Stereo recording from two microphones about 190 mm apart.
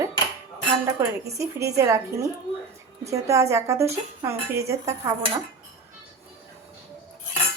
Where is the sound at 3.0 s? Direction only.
15° right (ahead or behind).